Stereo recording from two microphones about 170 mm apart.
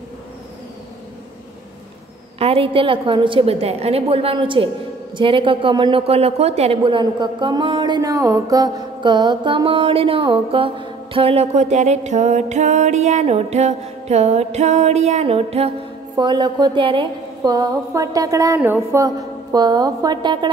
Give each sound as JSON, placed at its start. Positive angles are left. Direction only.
{"t": 2.3, "sound": "a woman's voice", "side_deg": -35}